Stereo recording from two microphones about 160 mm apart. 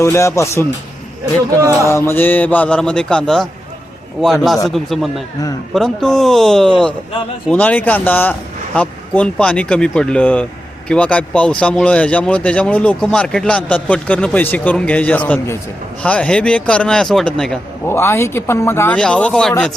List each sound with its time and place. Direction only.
0.0 s speech: 15° left (ahead or behind)
1.2 s speech: 20° right (ahead or behind)
1.9 s speech: 15° left (ahead or behind)
17.8 s speech: 15° left (ahead or behind)